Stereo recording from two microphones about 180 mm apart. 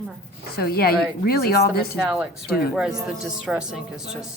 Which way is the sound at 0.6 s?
60° left (ahead or behind).